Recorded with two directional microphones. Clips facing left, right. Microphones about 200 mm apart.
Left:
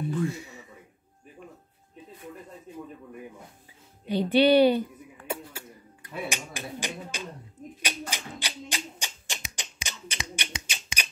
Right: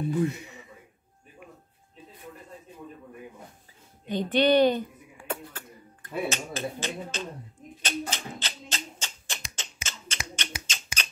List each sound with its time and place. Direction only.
0.2 s speech: 20° right (ahead or behind)
4.1 s speech: 10° left (ahead or behind)
5.2 s a sound: 10° left (ahead or behind)